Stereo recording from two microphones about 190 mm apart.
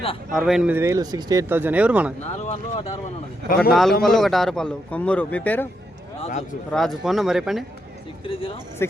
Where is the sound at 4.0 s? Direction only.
Centre (ahead or behind).